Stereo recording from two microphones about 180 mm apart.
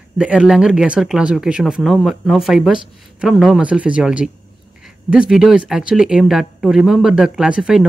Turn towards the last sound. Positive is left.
turn(degrees=-5)  # may be behind; listen again after turning